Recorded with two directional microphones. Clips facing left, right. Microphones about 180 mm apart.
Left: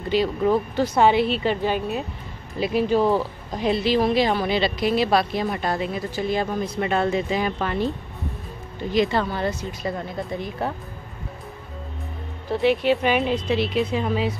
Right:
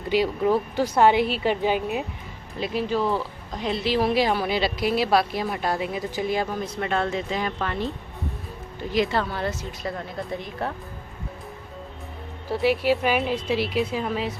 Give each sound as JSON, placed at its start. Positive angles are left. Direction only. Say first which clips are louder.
{"t": 0.1, "sound": "a woman's voice", "louder": "left 1 dB", "side_deg": -10}
{"t": 2.6, "sound": "speech", "louder": "left 5 dB", "side_deg": 15}
{"t": 3.8, "sound": "a woman's voice", "louder": "even", "side_deg": -5}
{"t": 8.9, "sound": "a woman's voice", "louder": "left 2 dB", "side_deg": 0}
{"t": 12.4, "sound": "a woman's voice", "louder": "left 2 dB", "side_deg": -5}